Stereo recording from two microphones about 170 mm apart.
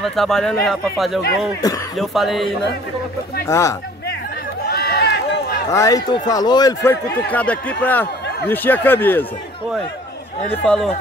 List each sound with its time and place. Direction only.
0.0 s speech: centre (ahead or behind)
1.6 s a man's voice: 20° left (ahead or behind)
2.0 s speech: centre (ahead or behind)
3.4 s speech: 15° left (ahead or behind)
4.6 s run: 70° left (ahead or behind); by 5.6 s 85° left
5.7 s a man's voice: 20° left (ahead or behind)
7.2 s speech: 10° left (ahead or behind)
10.6 s speech: 5° left (ahead or behind)